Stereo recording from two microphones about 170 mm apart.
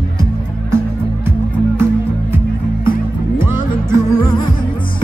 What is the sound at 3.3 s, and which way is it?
Music, 15° right (ahead or behind).